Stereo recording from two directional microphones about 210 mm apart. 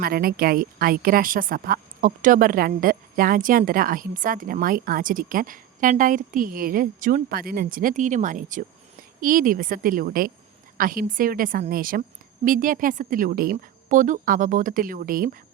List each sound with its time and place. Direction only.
0.0 s a woman's voice: 45° right (ahead or behind)